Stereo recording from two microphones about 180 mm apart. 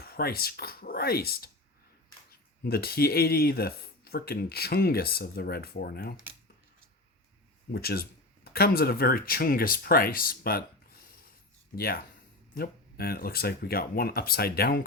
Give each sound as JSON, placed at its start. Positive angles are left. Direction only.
{"t": 0.0, "sound": "speech", "side_deg": 55}
{"t": 2.6, "sound": "speech", "side_deg": 60}
{"t": 7.7, "sound": "speech", "side_deg": 60}